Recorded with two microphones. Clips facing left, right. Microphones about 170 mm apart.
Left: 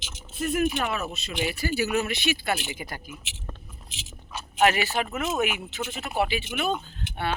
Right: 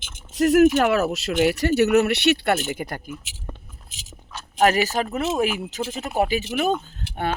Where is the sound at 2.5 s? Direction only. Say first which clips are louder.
Right 7 dB; 50° right (ahead or behind).